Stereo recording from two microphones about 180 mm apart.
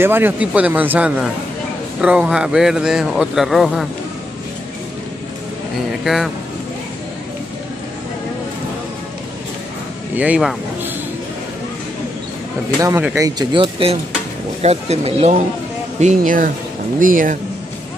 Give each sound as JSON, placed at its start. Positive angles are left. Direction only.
{"t": 0.0, "sound": "a man's voice", "side_deg": -10}
{"t": 6.0, "sound": "a man's voice", "side_deg": 0}
{"t": 10.1, "sound": "speech", "side_deg": -10}
{"t": 12.8, "sound": "speech", "side_deg": -15}